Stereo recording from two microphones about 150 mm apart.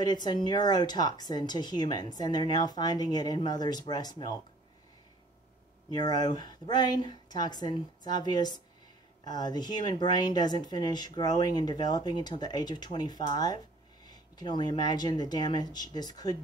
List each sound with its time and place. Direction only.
0.0 s speech: 30° left (ahead or behind)
5.9 s speech: 30° left (ahead or behind)